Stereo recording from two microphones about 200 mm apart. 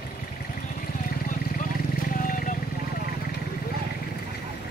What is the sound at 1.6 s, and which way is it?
Wild animals, 40° left (ahead or behind).